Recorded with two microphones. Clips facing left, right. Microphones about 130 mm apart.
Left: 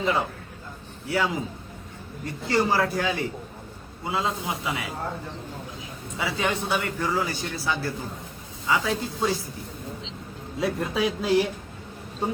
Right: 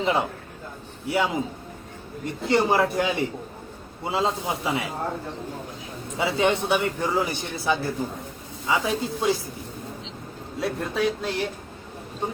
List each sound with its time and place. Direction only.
0.0 s a man's voice: 25° right (ahead or behind)
6.1 s a man's voice: 25° right (ahead or behind)
10.6 s a sound: centre (ahead or behind)